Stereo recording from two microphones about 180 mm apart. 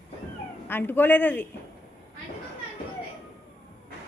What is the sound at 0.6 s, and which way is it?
Speech, 10° left (ahead or behind).